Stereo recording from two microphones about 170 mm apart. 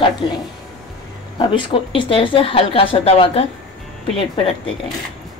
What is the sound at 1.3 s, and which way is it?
A woman's voice, 30° left (ahead or behind).